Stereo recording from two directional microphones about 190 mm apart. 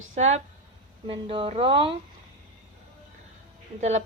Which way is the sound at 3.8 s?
35° right (ahead or behind).